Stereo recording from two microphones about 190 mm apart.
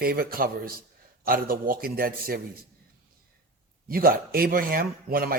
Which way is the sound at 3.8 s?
50° right (ahead or behind).